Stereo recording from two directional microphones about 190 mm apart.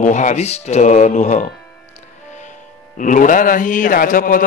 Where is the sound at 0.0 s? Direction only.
40° left (ahead or behind).